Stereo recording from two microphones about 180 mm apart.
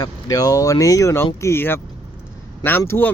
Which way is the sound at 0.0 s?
20° left (ahead or behind).